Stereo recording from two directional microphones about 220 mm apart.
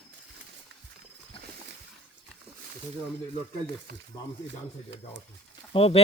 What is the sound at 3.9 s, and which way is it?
Speech, 45° right (ahead or behind).